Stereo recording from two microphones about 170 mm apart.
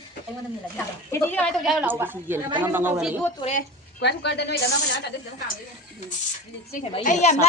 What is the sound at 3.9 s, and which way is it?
Speech, 80° left.